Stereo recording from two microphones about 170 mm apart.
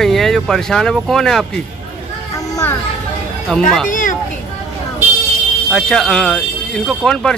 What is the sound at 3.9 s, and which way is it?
Speech, 50° left (ahead or behind).